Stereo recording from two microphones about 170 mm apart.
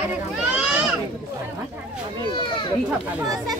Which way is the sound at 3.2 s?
20° right (ahead or behind).